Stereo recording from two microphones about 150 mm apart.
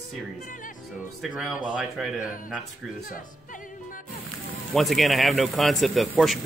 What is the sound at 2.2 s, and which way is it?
Speech, 65° left (ahead or behind).